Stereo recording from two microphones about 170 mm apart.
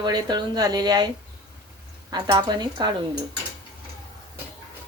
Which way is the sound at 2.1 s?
25° right (ahead or behind).